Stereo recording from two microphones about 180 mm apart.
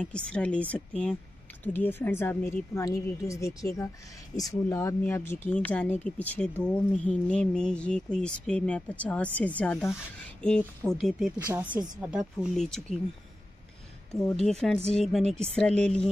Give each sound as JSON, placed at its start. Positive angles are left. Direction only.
{"t": 0.0, "sound": "speech", "side_deg": 5}
{"t": 14.9, "sound": "speech", "side_deg": 0}